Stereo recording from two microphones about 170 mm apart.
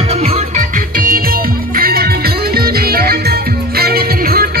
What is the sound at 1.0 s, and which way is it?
Music, 60° right (ahead or behind).